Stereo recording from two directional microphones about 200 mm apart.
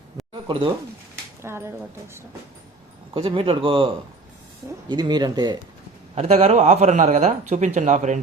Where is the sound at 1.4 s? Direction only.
15° right (ahead or behind).